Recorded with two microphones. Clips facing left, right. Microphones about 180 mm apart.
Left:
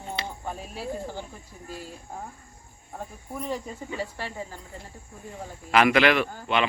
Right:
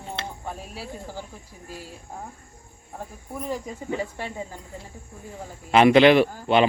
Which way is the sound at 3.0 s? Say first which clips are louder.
Right 1 dB; 5° right (ahead or behind).